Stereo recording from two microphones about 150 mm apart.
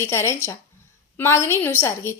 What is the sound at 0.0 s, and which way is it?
A woman's voice, 15° left (ahead or behind).